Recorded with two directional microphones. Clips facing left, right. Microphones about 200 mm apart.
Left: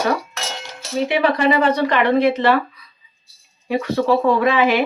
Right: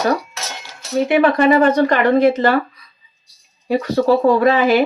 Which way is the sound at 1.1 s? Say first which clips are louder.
Right 4 dB; 50° right (ahead or behind).